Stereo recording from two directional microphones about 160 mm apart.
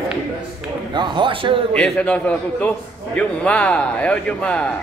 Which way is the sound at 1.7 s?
5° left (ahead or behind).